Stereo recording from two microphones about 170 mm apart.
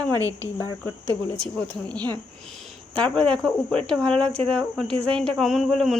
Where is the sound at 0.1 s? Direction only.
20° right (ahead or behind).